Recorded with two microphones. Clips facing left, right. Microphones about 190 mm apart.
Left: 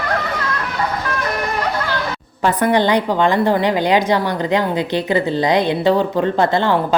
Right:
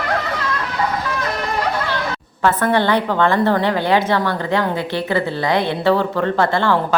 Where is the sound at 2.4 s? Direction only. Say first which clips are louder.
Left 1 dB; 15° left (ahead or behind).